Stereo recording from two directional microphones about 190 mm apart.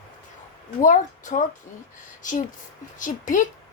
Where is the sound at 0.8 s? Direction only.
40° left (ahead or behind).